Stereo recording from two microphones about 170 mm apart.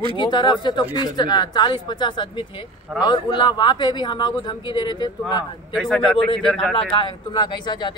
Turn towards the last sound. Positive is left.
turn(degrees=25)  # may be behind; listen again after turning